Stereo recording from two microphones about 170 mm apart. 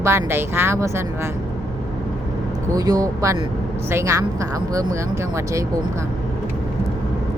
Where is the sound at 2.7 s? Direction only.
20° right (ahead or behind).